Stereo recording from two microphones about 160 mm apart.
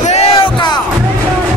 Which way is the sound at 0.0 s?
40° left (ahead or behind).